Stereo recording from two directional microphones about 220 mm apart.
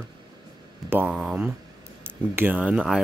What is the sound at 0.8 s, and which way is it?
Speech, 5° right (ahead or behind).